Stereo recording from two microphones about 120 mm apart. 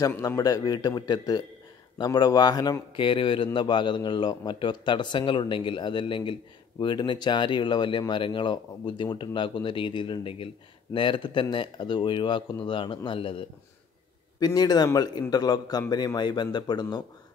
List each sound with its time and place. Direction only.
0.0 s a man's voice: 30° left (ahead or behind); by 13.4 s 45° left (ahead or behind)
14.4 s a man's voice: 30° left (ahead or behind)